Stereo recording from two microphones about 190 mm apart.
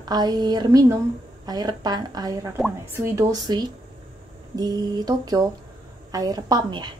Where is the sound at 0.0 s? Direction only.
20° right (ahead or behind).